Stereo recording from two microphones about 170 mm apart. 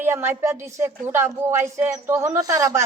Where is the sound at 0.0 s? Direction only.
15° right (ahead or behind).